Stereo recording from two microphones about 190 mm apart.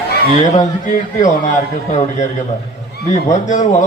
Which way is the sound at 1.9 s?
35° left (ahead or behind).